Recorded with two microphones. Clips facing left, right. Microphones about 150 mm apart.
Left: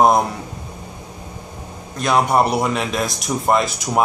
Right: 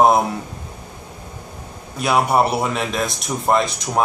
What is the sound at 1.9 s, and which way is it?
Speech, 5° right (ahead or behind).